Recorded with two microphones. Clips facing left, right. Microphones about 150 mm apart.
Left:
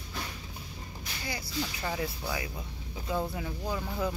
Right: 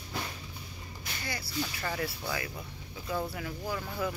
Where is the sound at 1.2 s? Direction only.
15° left (ahead or behind).